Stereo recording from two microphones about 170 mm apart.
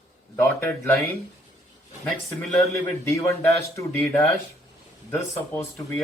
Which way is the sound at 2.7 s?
15° left (ahead or behind).